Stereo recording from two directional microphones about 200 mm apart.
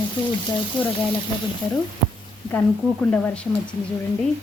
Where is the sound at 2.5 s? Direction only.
5° left (ahead or behind).